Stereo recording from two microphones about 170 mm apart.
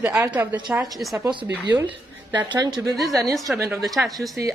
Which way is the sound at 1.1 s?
20° right (ahead or behind).